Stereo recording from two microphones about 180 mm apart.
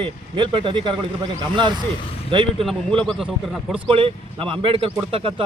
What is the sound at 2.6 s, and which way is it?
Speech, 5° left (ahead or behind).